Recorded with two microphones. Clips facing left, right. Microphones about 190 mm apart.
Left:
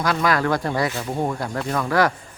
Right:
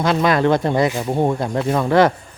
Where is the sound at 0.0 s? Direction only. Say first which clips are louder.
Right 5 dB; 25° right (ahead or behind).